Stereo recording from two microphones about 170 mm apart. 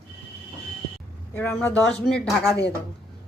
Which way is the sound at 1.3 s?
10° left (ahead or behind).